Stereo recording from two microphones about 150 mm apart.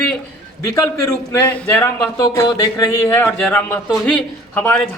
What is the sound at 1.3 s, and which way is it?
Speech, 10° left (ahead or behind).